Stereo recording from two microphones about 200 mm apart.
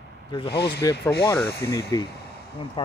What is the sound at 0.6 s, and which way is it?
Speech, 55° left (ahead or behind).